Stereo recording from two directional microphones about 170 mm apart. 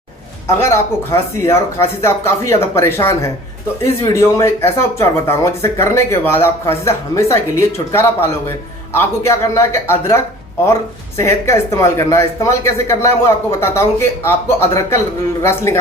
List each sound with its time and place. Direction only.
0.4 s speech: 15° left (ahead or behind)
11.2 s speech: 15° left (ahead or behind)